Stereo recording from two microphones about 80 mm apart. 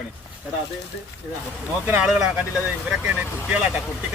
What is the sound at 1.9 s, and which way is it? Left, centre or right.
Speech, centre.